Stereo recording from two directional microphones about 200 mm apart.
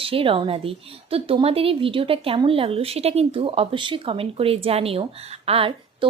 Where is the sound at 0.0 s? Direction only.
25° right (ahead or behind).